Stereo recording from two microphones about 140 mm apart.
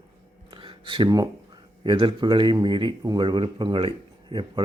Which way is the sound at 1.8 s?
35° right (ahead or behind).